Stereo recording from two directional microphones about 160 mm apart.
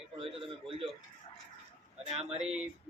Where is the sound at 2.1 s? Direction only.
40° right (ahead or behind).